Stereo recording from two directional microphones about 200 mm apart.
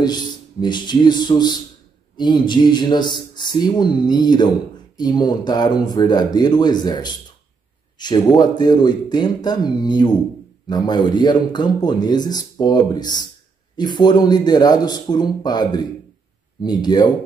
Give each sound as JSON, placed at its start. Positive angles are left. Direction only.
{"t": 0.0, "sound": "speech", "side_deg": 20}